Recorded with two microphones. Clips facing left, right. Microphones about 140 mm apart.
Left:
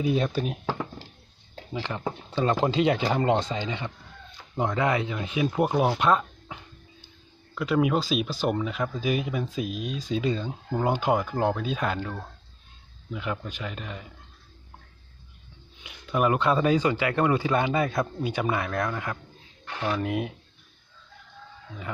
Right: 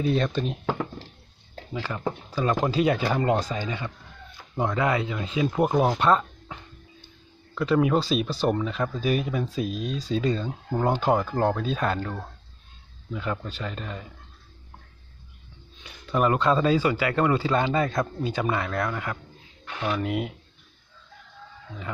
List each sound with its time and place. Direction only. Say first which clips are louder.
0.0 s speech: right 1 dB; 10° left (ahead or behind)
1.7 s speech: right 1 dB; 25° left (ahead or behind)
5.5 s speech: right 2 dB; centre (ahead or behind)
5.9 s a sound: right 1 dB; 5° left (ahead or behind)
7.6 s speech: right 2 dB; 5° left (ahead or behind)
13.1 s speech: right 1 dB; 10° left (ahead or behind)
15.8 s speech: right 1 dB; 10° left (ahead or behind)